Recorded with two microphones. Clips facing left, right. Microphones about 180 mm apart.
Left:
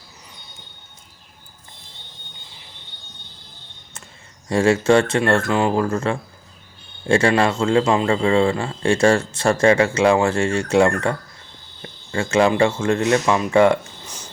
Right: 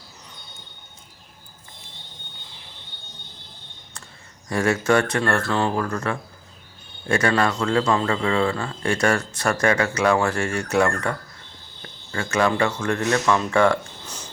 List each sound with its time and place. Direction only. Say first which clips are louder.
4.4 s a man's voice: left 5 dB; 25° left (ahead or behind)
5.8 s a man's voice: left 5 dB; 25° left (ahead or behind)
14.0 s a sound: even; 10° left (ahead or behind)